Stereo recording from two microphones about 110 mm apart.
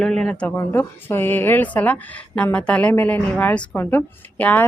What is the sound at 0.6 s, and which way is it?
Speech, 20° left (ahead or behind).